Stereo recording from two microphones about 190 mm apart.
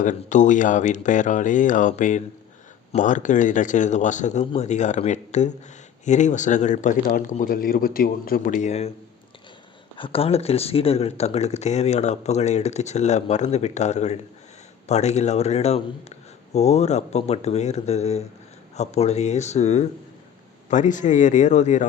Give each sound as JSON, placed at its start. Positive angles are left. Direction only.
{"t": 0.0, "sound": "speech", "side_deg": 40}
{"t": 10.0, "sound": "speech", "side_deg": 30}